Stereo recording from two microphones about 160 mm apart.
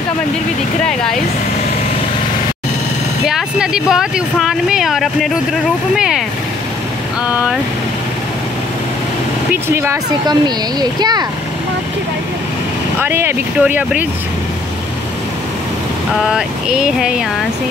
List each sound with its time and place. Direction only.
3.3 s speech: 5° right (ahead or behind)
9.5 s speech: 15° right (ahead or behind)
10.2 s speech: 25° right (ahead or behind)
13.0 s speech: 15° right (ahead or behind)
16.2 s speech: 5° right (ahead or behind)